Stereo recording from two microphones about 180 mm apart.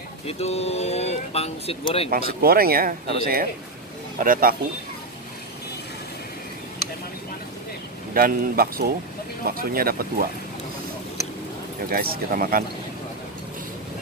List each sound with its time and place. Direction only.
0.3 s speech: 35° left (ahead or behind)
2.0 s speech: 55° right (ahead or behind)
8.1 s speech: 55° right (ahead or behind)
11.8 s speech: 55° right (ahead or behind)